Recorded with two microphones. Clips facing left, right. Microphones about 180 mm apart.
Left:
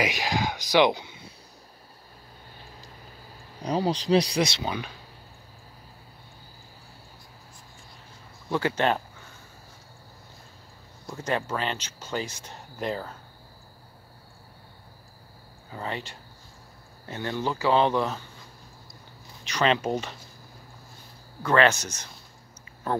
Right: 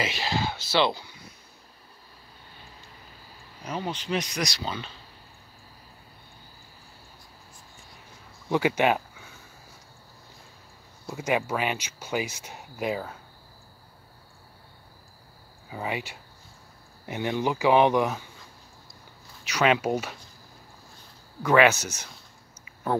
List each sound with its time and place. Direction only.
0.0 s speech: 15° left (ahead or behind)
3.6 s speech: 35° left (ahead or behind); by 4.9 s 15° left (ahead or behind)
8.5 s speech: 15° right (ahead or behind)
11.1 s speech: 10° right (ahead or behind)
15.7 s speech: 10° right (ahead or behind)
19.4 s speech: 10° right (ahead or behind)
21.4 s speech: 10° right (ahead or behind)